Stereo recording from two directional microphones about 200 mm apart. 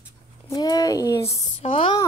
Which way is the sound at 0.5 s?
20° left (ahead or behind).